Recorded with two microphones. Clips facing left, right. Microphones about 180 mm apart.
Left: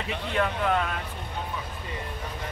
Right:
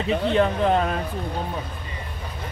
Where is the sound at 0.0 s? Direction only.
30° right (ahead or behind).